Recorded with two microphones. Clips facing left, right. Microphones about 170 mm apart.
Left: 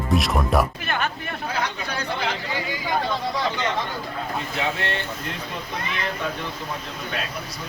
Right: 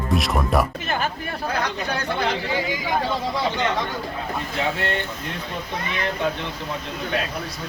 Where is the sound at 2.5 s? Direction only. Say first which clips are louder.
Right 2 dB; 15° right (ahead or behind).